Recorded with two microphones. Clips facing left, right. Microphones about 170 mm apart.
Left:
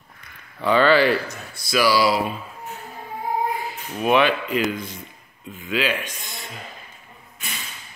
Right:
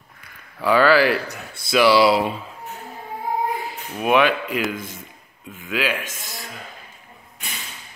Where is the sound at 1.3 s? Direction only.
55° right (ahead or behind).